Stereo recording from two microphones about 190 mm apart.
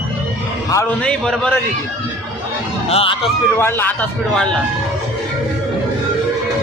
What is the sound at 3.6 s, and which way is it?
Speech, 10° left (ahead or behind).